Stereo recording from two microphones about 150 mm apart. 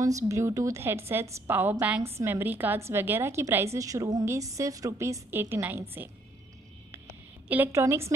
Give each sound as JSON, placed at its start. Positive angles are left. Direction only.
{"t": 0.0, "sound": "a woman's voice", "side_deg": -20}
{"t": 7.4, "sound": "a woman's voice", "side_deg": -10}